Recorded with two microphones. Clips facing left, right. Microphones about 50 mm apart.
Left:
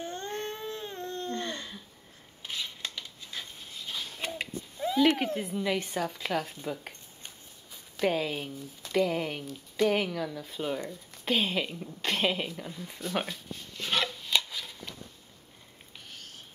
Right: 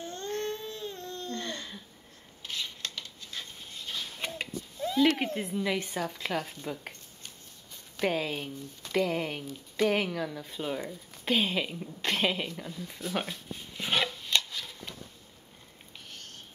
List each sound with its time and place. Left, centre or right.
0.0 s baby cry: left
2.4 s scissors: centre
3.7 s a sound: centre
4.7 s cat: centre
5.1 s speech: centre
13.5 s a sound: centre
14.0 s chopping: centre
14.3 s shuffling cards: centre
16.1 s cat: centre